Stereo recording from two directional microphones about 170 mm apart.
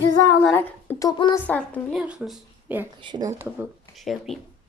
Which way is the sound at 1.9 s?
5° right (ahead or behind).